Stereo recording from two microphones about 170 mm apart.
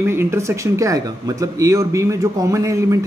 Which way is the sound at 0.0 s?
15° right (ahead or behind).